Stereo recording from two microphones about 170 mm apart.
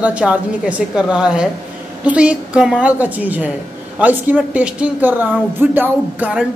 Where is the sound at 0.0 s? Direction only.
5° right (ahead or behind).